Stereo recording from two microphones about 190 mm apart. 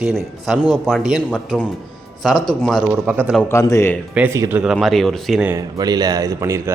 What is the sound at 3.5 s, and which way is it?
Speech, 15° left (ahead or behind).